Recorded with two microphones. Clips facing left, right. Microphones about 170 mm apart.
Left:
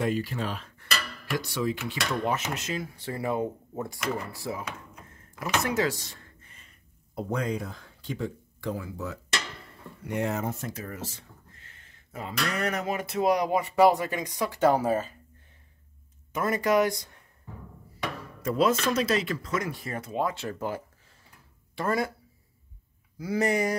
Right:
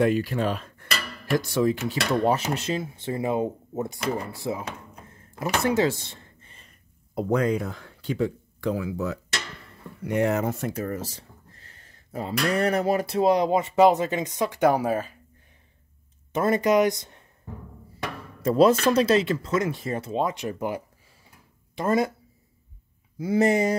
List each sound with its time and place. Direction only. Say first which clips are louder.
0.0 s speech: right 6 dB; 60° right (ahead or behind); by 6.7 s 30° right (ahead or behind)
7.2 s speech: right 7 dB; 65° right (ahead or behind)
10.7 s speech: right 7 dB; 45° right (ahead or behind); by 15.0 s 10° right (ahead or behind)
16.3 s speech: right 4 dB; 30° right (ahead or behind)
18.4 s speech: right 6 dB; 35° right (ahead or behind)
23.1 s speech: right 5 dB; 25° right (ahead or behind)